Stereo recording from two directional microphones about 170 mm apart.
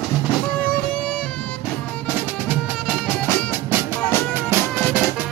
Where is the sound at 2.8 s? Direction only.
10° left (ahead or behind).